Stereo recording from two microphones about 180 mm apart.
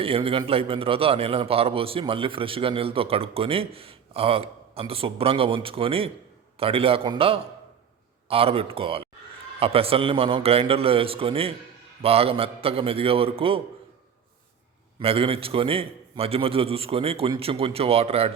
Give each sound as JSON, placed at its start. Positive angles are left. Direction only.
{"t": 0.0, "sound": "a man's voice", "side_deg": -30}
{"t": 14.9, "sound": "a man's voice", "side_deg": -30}